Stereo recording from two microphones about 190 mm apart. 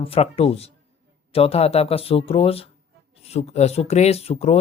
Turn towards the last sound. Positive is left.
turn(degrees=35)  # may be behind; listen again after turning